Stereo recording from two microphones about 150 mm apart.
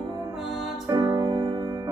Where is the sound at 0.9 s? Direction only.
25° right (ahead or behind).